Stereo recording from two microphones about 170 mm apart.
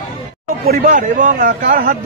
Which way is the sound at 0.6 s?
50° right (ahead or behind).